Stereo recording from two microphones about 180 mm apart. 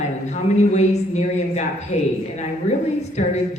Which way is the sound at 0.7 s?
40° left (ahead or behind).